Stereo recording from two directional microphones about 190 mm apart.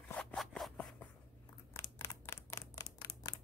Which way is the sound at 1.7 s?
15° left (ahead or behind).